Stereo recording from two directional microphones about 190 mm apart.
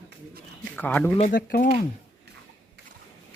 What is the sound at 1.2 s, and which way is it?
Speech, 45° left (ahead or behind).